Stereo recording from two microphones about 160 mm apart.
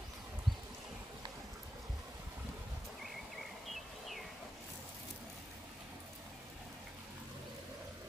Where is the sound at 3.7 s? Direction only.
Centre (ahead or behind).